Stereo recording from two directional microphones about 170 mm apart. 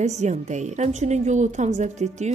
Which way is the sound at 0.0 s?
45° right (ahead or behind).